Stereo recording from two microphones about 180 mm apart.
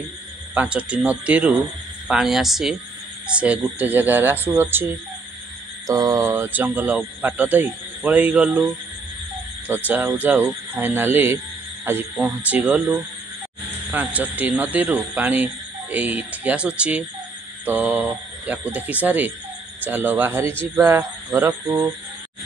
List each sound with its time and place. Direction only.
0.6 s speech: 5° right (ahead or behind)
5.9 s speech: 20° right (ahead or behind); by 8.7 s 5° right (ahead or behind)
9.8 s speech: 10° right (ahead or behind)